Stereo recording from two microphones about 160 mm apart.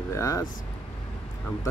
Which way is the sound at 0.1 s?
20° left (ahead or behind).